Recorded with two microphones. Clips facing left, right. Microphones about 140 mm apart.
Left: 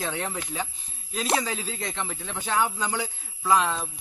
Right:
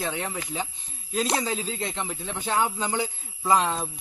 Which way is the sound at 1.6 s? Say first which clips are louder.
Right 2 dB; 10° right (ahead or behind).